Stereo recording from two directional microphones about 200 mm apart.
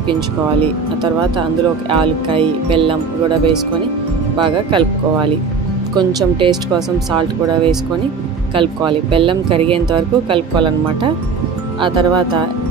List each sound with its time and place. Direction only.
1.9 s speech: 25° right (ahead or behind)